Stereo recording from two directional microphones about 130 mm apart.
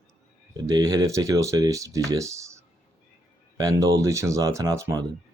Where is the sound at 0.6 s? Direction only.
30° right (ahead or behind).